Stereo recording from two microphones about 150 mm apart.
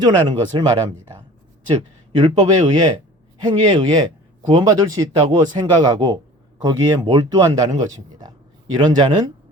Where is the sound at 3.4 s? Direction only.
30° right (ahead or behind).